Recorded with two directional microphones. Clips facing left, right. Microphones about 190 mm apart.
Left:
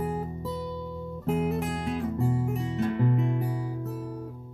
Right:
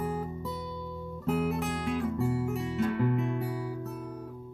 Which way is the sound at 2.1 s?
25° left (ahead or behind).